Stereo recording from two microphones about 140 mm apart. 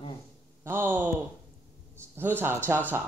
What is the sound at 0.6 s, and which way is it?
Speech, 15° right (ahead or behind).